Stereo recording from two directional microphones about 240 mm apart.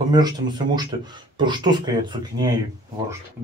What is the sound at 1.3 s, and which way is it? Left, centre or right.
Speech, centre.